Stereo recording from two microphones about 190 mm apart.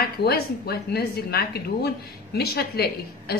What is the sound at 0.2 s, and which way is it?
A woman's voice, 55° left (ahead or behind).